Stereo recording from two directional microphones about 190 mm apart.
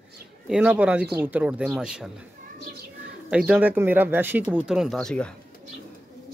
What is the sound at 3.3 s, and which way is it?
Speech, 5° right (ahead or behind).